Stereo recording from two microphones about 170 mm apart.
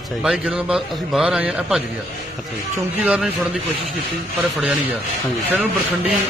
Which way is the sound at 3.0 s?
5° right (ahead or behind).